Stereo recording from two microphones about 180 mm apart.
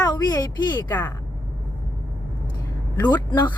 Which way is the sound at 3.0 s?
10° left (ahead or behind).